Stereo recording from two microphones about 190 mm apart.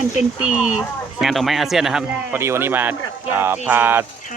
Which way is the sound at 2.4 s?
15° right (ahead or behind).